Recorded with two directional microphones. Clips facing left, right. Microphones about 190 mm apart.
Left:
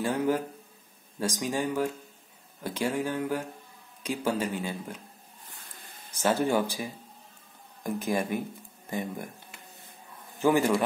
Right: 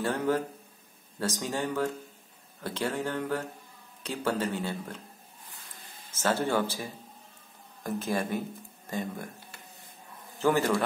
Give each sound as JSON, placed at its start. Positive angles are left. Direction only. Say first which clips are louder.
{"t": 0.0, "sound": "a man's voice", "louder": "left 1 dB", "side_deg": 10}
{"t": 6.1, "sound": "a man's voice", "louder": "left 2 dB", "side_deg": 15}
{"t": 10.4, "sound": "a man's voice", "louder": "left 2 dB", "side_deg": 15}